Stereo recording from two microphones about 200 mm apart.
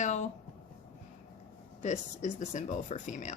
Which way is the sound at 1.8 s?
40° left (ahead or behind).